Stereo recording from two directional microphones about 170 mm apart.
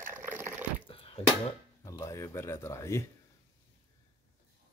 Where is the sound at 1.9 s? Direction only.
20° left (ahead or behind).